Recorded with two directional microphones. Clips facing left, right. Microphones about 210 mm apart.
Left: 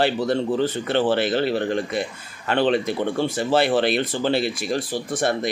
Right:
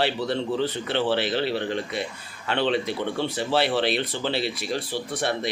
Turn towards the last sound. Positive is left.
turn(degrees=45)  # may be behind; listen again after turning